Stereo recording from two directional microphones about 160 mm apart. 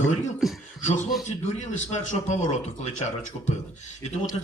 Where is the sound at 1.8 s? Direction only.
50° left (ahead or behind).